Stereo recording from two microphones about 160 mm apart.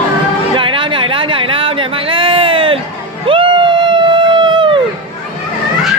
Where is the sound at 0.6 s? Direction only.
30° right (ahead or behind).